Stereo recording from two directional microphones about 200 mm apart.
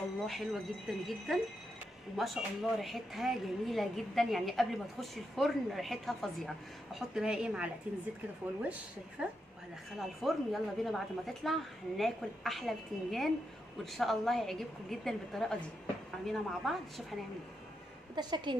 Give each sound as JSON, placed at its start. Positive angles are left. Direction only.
{"t": 0.3, "sound": "speech", "side_deg": 0}
{"t": 9.2, "sound": "speech", "side_deg": -5}
{"t": 18.1, "sound": "a woman's voice", "side_deg": -20}